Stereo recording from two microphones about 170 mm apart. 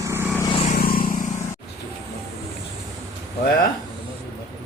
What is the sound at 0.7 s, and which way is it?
Vehicle, 60° left (ahead or behind).